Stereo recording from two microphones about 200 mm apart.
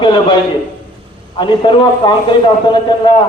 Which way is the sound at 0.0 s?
25° left (ahead or behind).